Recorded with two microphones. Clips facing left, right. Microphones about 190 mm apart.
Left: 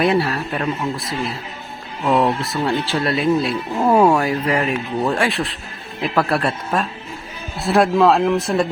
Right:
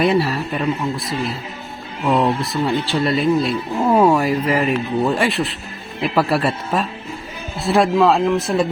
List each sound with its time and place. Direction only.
0.0 s speech: centre (ahead or behind)